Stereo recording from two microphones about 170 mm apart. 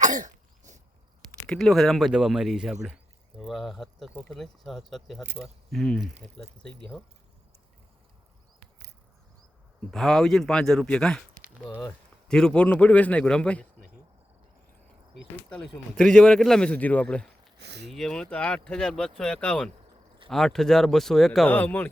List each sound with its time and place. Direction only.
0.0 s cough: 45° right (ahead or behind)
1.3 s speech: 5° left (ahead or behind)
9.9 s speech: centre (ahead or behind)
12.3 s a man's voice: 5° left (ahead or behind)
15.4 s speech: 5° left (ahead or behind)
17.6 s speech: 85° right
17.8 s speech: centre (ahead or behind)